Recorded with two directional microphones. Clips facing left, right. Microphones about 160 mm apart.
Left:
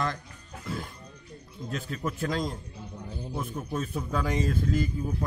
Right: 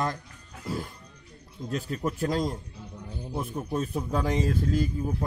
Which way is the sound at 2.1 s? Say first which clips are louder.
Right 3 dB; 35° right (ahead or behind).